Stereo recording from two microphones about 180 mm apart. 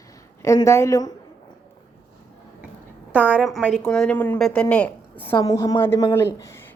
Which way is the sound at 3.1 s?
10° right (ahead or behind).